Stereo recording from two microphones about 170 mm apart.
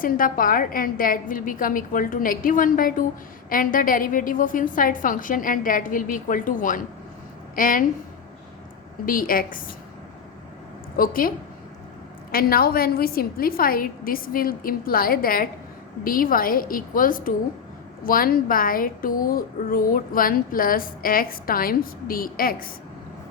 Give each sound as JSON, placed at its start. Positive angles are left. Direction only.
{"t": 0.0, "sound": "a woman's voice", "side_deg": 55}
{"t": 9.0, "sound": "speech", "side_deg": 55}
{"t": 10.9, "sound": "speech", "side_deg": 55}
{"t": 12.3, "sound": "speech", "side_deg": 60}